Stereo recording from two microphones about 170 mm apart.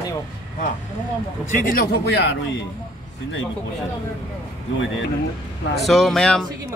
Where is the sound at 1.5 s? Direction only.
55° left (ahead or behind); by 2.3 s 80° left.